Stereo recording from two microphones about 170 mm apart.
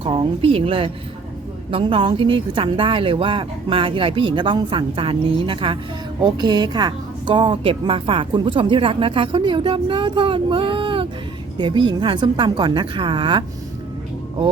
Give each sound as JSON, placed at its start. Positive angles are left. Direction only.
{"t": 0.0, "sound": "a woman's voice", "side_deg": -30}